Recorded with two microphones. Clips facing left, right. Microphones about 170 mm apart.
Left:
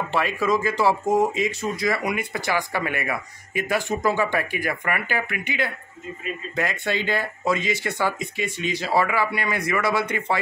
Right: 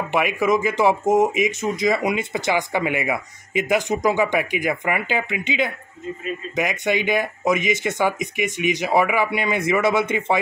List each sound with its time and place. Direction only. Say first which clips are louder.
0.1 s speech: right 4 dB; 15° right (ahead or behind)